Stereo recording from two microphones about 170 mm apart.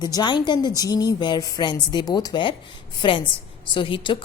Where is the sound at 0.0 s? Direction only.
25° left (ahead or behind).